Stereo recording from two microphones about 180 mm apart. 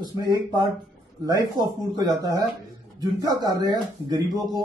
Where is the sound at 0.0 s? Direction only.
25° right (ahead or behind).